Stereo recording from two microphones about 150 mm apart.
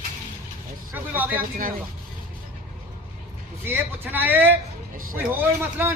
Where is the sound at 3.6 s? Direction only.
15° right (ahead or behind).